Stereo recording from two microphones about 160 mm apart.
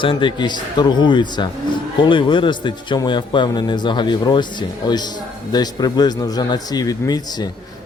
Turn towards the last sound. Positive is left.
turn(degrees=25)  # may be behind; listen again after turning